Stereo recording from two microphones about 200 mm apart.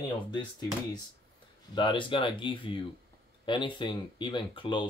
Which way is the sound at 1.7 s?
25° left (ahead or behind).